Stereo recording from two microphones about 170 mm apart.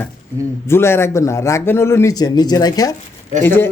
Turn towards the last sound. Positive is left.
turn(degrees=15)  # may be behind; listen again after turning